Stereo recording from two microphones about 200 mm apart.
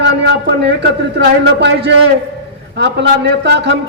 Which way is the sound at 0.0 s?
60° right (ahead or behind).